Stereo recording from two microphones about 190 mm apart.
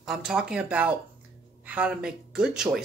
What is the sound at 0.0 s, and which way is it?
Speech, centre (ahead or behind).